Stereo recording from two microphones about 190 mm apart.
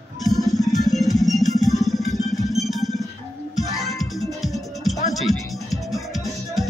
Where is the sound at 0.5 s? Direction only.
Centre (ahead or behind).